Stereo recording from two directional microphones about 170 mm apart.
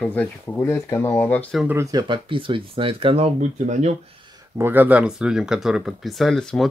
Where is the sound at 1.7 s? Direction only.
20° right (ahead or behind).